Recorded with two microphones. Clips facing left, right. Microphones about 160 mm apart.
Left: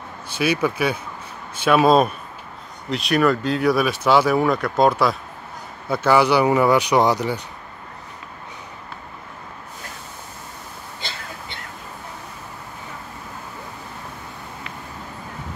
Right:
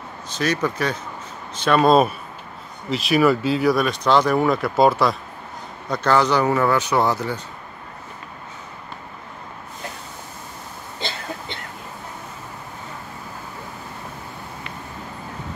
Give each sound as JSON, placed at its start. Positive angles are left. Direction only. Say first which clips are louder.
{"t": 0.3, "sound": "speech", "louder": "left 2 dB", "side_deg": 10}